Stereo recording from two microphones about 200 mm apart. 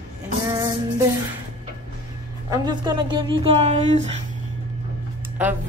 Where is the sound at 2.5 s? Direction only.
20° right (ahead or behind).